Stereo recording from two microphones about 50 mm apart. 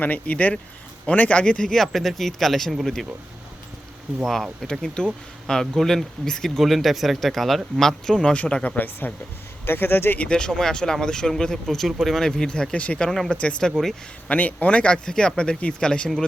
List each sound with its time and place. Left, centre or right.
0.0 s speech: left
1.4 s speech: centre
1.7 s speech: centre
4.6 s speech: centre; by 9.1 s left
9.6 s speech: left
10.2 s speech: centre
12.3 s speech: centre
12.8 s speech: left
13.1 s speech: centre
13.3 s speech: left